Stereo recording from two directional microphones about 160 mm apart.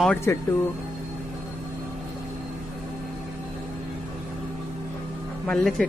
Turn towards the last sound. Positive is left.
turn(degrees=5)  # may be behind; listen again after turning